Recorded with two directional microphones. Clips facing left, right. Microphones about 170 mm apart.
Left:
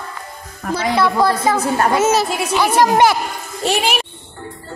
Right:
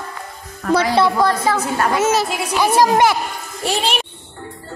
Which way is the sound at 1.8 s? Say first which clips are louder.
Left 1 dB; 40° left (ahead or behind).